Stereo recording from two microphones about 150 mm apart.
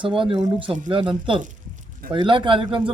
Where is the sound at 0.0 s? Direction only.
35° right (ahead or behind).